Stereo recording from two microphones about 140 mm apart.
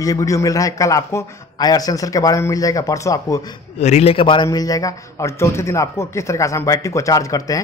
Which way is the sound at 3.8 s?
50° left (ahead or behind).